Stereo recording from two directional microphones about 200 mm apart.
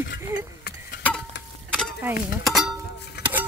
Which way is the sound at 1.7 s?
5° right (ahead or behind).